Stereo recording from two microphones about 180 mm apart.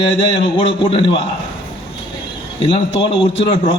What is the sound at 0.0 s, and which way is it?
A man's voice, 30° left (ahead or behind).